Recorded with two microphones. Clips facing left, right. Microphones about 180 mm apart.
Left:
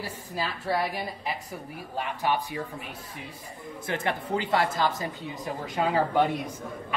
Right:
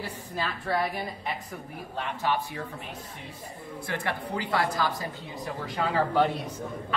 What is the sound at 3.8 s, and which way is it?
A man's voice, 20° left (ahead or behind).